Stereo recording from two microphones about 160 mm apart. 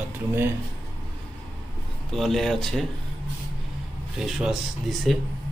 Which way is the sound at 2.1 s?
Centre (ahead or behind).